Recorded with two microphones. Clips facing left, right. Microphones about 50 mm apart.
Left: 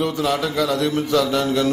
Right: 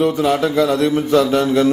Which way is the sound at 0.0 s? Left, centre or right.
Centre.